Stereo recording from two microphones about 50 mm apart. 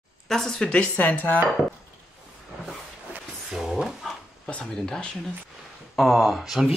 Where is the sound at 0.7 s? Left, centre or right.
Left.